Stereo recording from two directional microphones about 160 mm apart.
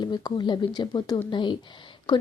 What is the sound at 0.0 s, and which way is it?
Speech, 25° left (ahead or behind).